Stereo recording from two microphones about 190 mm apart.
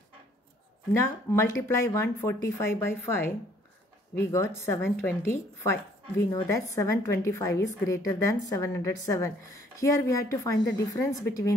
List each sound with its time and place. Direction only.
1.0 s a woman's voice: 15° left (ahead or behind)